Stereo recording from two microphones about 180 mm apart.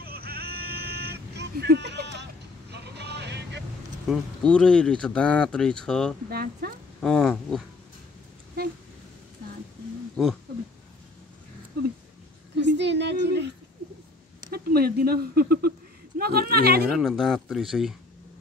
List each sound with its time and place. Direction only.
0.0 s vehicle: 60° right (ahead or behind)
4.1 s speech: 5° left (ahead or behind)
6.3 s speech: 60° right (ahead or behind)
7.0 s speech: centre (ahead or behind)
10.2 s speech: centre (ahead or behind)
12.5 s a woman's voice: 75° right (ahead or behind)
14.5 s speech: 60° right (ahead or behind)
17.0 s speech: centre (ahead or behind)